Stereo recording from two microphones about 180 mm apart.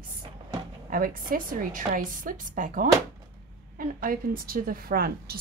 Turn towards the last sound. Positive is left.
turn(degrees=-55)  # may be behind; listen again after turning